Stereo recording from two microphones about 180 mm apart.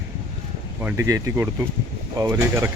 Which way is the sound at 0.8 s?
15° right (ahead or behind).